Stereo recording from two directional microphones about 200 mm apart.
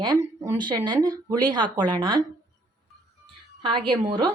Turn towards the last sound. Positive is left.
turn(degrees=-25)  # may be behind; listen again after turning